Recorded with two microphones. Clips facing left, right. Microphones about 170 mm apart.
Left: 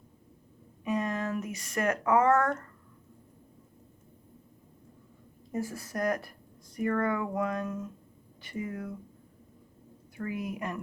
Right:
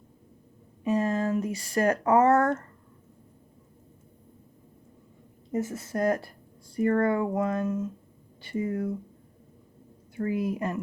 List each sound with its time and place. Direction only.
0.9 s speech: 30° right (ahead or behind)
5.5 s speech: 25° right (ahead or behind)
10.2 s a woman's voice: 30° right (ahead or behind)